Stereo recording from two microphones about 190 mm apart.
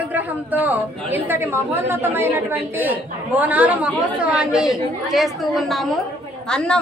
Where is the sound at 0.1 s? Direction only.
10° right (ahead or behind).